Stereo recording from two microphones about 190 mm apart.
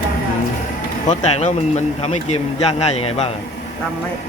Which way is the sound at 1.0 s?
40° left (ahead or behind).